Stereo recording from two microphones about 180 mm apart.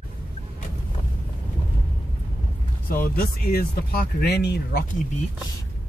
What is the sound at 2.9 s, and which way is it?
Speech, 55° left (ahead or behind).